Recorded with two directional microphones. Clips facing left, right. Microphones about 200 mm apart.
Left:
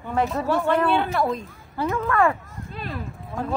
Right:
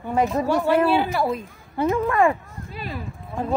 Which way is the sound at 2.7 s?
5° right (ahead or behind).